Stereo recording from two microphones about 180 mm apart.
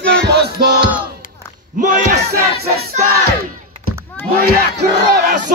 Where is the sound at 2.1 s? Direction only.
65° right (ahead or behind).